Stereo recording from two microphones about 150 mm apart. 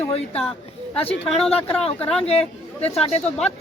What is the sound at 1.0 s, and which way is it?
Speech, 10° left (ahead or behind).